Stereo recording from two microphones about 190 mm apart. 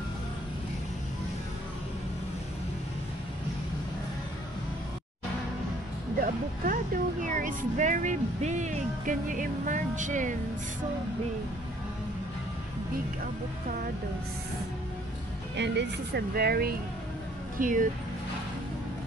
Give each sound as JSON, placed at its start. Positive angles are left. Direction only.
{"t": 6.2, "sound": "speech", "side_deg": -45}
{"t": 12.9, "sound": "speech", "side_deg": -50}
{"t": 15.5, "sound": "speech", "side_deg": -65}
{"t": 17.6, "sound": "speech", "side_deg": -45}